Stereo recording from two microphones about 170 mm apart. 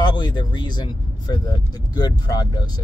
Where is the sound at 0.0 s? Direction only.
25° left (ahead or behind).